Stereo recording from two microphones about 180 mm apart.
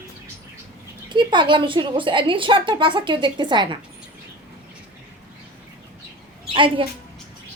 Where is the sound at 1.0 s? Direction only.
25° right (ahead or behind).